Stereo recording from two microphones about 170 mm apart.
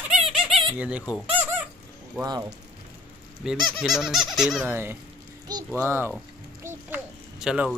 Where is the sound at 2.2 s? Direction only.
20° right (ahead or behind).